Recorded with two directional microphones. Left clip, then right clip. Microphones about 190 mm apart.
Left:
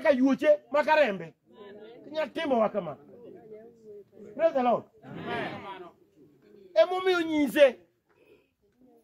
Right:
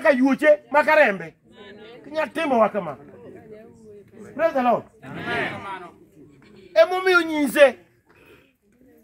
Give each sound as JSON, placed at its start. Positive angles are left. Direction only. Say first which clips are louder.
{"t": 0.0, "sound": "a man's voice", "louder": "right 6 dB", "side_deg": 15}
{"t": 1.5, "sound": "a sound", "louder": "right 4 dB", "side_deg": 40}
{"t": 2.0, "sound": "a man's voice", "louder": "right 6 dB", "side_deg": 10}
{"t": 4.4, "sound": "a woman's voice", "louder": "right 5 dB", "side_deg": 0}